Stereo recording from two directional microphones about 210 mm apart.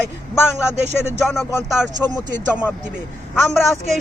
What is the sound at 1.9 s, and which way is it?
Speech, 20° right (ahead or behind).